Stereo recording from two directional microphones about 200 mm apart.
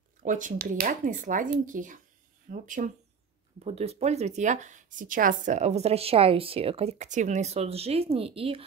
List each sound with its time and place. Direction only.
0.2 s speech: 40° right (ahead or behind)